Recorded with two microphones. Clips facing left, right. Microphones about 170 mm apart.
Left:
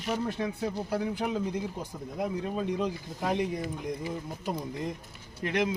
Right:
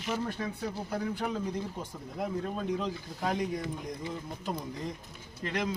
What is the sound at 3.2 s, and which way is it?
Speech, 5° left (ahead or behind).